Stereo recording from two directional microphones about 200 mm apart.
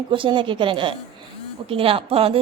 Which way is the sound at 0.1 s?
25° right (ahead or behind).